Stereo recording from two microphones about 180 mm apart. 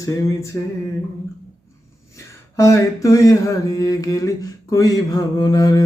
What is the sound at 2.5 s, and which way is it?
Mantra, 15° left (ahead or behind).